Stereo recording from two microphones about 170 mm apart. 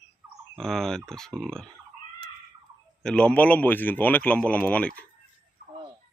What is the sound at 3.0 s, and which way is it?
Speech, 5° left (ahead or behind).